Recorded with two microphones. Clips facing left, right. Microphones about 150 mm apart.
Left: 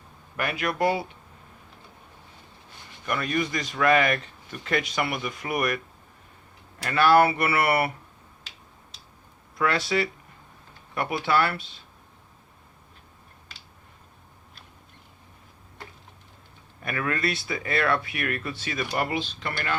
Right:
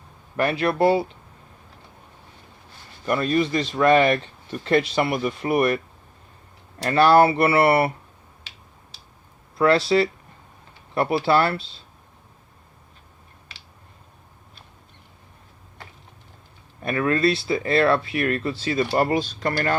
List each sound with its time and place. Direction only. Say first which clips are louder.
0.3 s speech: right 6 dB; 30° right (ahead or behind)
3.1 s speech: right 6 dB; 30° right (ahead or behind)
6.8 s speech: right 4 dB; 35° right (ahead or behind)
9.6 s speech: right 7 dB; 30° right (ahead or behind)
16.8 s speech: right 8 dB; 30° right (ahead or behind)
18.9 s speech: right 4 dB; 45° right (ahead or behind)